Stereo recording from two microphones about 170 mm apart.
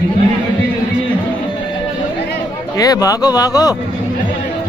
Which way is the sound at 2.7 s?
20° left (ahead or behind).